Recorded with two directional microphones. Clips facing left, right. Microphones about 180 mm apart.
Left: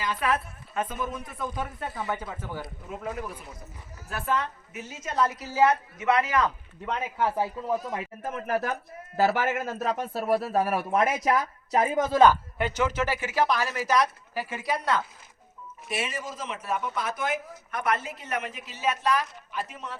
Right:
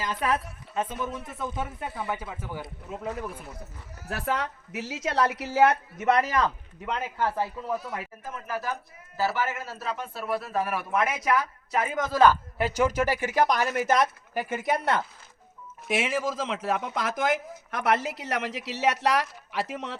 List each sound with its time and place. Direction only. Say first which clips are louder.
0.0 s a woman's voice: even; 35° right (ahead or behind)
0.7 s speech: even; 25° right (ahead or behind)
2.0 s a man's voice: left 1 dB; 10° right (ahead or behind)
4.1 s a woman's voice: even; 75° right (ahead or behind)
6.0 s a man's voice: right 2 dB; 40° right (ahead or behind)
6.9 s a man's voice: left 1 dB; 5° left (ahead or behind)
8.2 s speech: left 7 dB; 55° left (ahead or behind); by 12.0 s 35° left (ahead or behind)
12.1 s a man's voice: left 1 dB; 20° left (ahead or behind)
12.5 s a man's voice: right 2 dB; 10° right (ahead or behind)
13.6 s speech: right 2 dB; 50° right (ahead or behind)
14.6 s speech: right 1 dB; 20° right (ahead or behind)
15.9 s speech: right 6 dB; 90° right